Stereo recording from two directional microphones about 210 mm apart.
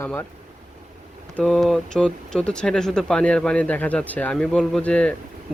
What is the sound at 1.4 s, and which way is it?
Speech, centre (ahead or behind).